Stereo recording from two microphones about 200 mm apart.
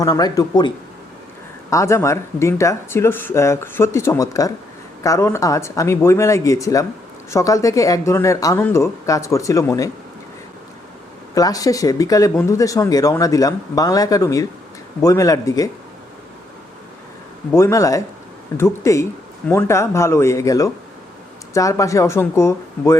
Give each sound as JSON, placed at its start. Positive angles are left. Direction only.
{"t": 0.0, "sound": "speech", "side_deg": 20}
{"t": 1.7, "sound": "speech", "side_deg": 15}
{"t": 11.3, "sound": "speech", "side_deg": 20}
{"t": 17.5, "sound": "speech", "side_deg": 15}